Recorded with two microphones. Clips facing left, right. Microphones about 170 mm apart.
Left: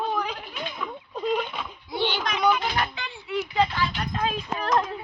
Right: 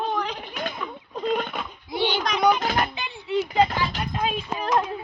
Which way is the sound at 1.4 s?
50° right (ahead or behind).